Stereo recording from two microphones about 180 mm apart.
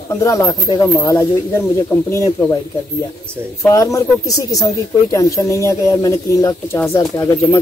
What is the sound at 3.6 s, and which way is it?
Speech, 15° left (ahead or behind).